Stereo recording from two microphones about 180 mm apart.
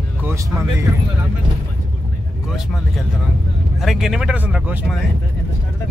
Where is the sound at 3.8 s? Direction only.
Centre (ahead or behind).